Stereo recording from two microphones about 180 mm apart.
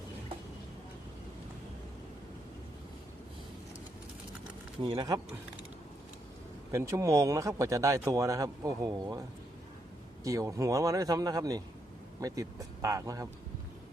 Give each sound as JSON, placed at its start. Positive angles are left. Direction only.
{"t": 4.8, "sound": "speech", "side_deg": -25}
{"t": 6.7, "sound": "speech", "side_deg": -15}
{"t": 10.2, "sound": "speech", "side_deg": -20}